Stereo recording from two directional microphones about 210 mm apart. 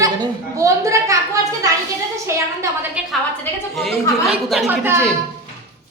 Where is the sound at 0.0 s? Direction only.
15° right (ahead or behind).